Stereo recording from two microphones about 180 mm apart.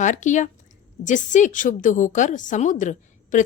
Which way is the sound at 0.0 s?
45° left (ahead or behind).